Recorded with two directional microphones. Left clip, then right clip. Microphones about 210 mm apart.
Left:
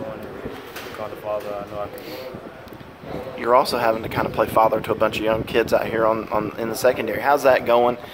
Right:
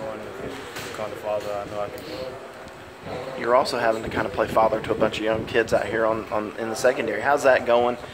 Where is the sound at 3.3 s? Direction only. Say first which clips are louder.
Left 3 dB; 25° left (ahead or behind).